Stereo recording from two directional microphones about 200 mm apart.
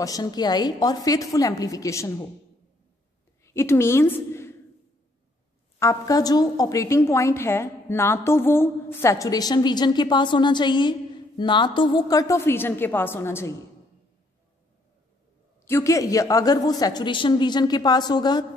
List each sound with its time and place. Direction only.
0.0 s a woman's voice: 20° left (ahead or behind)
3.4 s a woman's voice: 15° left (ahead or behind)
5.8 s a woman's voice: 15° left (ahead or behind)
15.6 s a woman's voice: 15° left (ahead or behind)